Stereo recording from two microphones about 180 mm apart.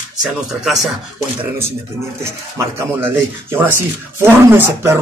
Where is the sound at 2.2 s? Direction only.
15° right (ahead or behind).